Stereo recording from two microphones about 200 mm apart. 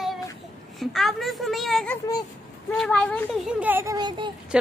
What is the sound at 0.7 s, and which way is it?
Speech, centre (ahead or behind).